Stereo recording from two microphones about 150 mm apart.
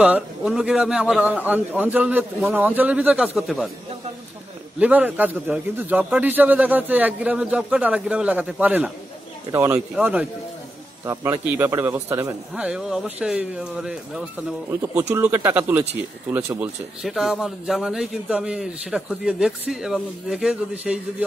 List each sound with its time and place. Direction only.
0.0 s a man's voice: 5° right (ahead or behind)
4.7 s a man's voice: 10° right (ahead or behind)
9.5 s speech: 20° right (ahead or behind)
9.8 s a man's voice: 5° right (ahead or behind)
11.1 s a man's voice: 20° right (ahead or behind)
14.7 s a man's voice: 20° right (ahead or behind)
17.0 s a man's voice: centre (ahead or behind)